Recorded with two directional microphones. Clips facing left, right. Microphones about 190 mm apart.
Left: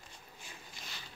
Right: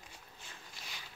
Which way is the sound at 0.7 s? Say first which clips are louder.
Even; 10° right (ahead or behind).